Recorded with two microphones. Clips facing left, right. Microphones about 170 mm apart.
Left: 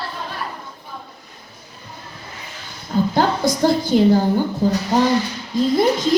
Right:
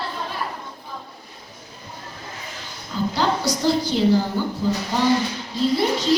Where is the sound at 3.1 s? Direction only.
50° left (ahead or behind).